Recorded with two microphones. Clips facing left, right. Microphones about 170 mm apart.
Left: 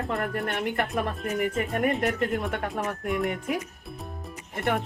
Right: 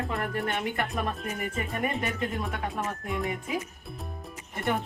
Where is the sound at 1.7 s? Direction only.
70° left (ahead or behind).